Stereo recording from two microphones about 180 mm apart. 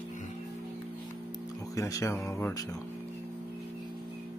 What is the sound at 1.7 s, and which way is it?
Speech, 15° left (ahead or behind).